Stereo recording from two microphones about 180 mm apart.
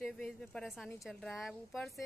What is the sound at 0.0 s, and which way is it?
Speech, 5° left (ahead or behind).